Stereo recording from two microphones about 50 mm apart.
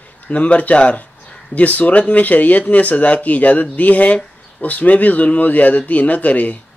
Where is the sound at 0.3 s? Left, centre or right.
Left.